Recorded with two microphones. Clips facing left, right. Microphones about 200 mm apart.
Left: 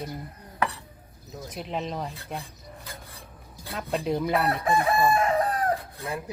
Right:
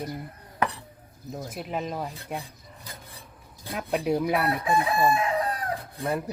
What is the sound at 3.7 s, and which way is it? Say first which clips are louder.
Speech: right 2 dB; 10° right (ahead or behind).